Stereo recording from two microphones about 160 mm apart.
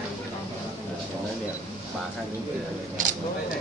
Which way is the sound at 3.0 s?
55° right (ahead or behind).